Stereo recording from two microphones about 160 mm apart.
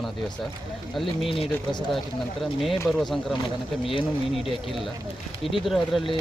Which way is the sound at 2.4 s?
Centre (ahead or behind).